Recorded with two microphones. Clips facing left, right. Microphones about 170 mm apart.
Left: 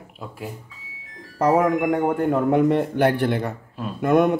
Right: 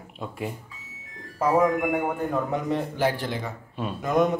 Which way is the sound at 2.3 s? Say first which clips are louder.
Left 8 dB; 60° left (ahead or behind).